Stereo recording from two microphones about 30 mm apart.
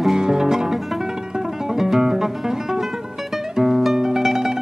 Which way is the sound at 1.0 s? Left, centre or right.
Centre.